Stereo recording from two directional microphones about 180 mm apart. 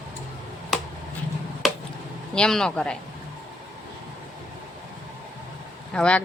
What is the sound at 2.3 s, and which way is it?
Speech, 5° left (ahead or behind).